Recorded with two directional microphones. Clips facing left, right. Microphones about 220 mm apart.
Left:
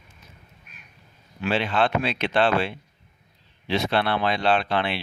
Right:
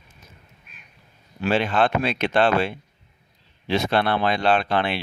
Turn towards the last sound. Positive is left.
turn(degrees=-45)  # may be behind; listen again after turning